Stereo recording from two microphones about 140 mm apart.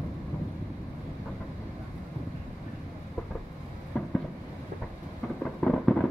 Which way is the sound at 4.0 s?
5° left (ahead or behind).